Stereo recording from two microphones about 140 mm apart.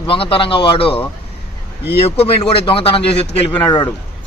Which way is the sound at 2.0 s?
45° left (ahead or behind).